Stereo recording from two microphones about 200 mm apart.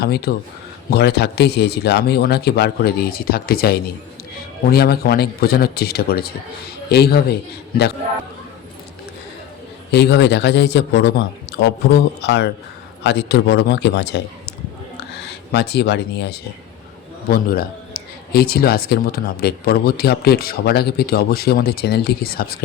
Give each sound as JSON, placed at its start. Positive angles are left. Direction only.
{"t": 0.0, "sound": "a man's voice", "side_deg": 55}
{"t": 9.9, "sound": "a man's voice", "side_deg": 55}
{"t": 14.9, "sound": "a sound", "side_deg": 55}
{"t": 17.2, "sound": "a man's voice", "side_deg": 45}